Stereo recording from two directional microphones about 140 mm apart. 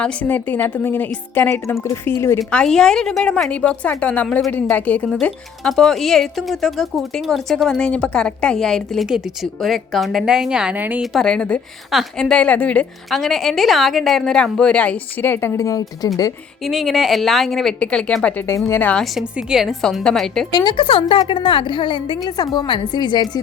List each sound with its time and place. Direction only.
0.0 s a woman's voice: 10° left (ahead or behind)
2.4 s a woman's voice: 5° left (ahead or behind); by 11.0 s 10° right (ahead or behind)
11.1 s a woman's voice: 5° left (ahead or behind); by 15.8 s 20° left (ahead or behind)
16.6 s a woman's voice: centre (ahead or behind)
19.1 s speech: centre (ahead or behind)
20.5 s a woman's voice: 35° left (ahead or behind)